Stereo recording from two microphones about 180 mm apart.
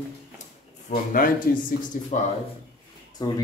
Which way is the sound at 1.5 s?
55° left (ahead or behind).